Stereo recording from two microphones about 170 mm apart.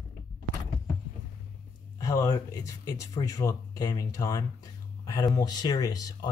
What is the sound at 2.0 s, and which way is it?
Speech, 20° left (ahead or behind).